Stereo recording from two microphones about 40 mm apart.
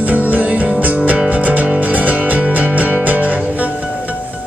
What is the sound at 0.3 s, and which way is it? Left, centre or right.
Music, right.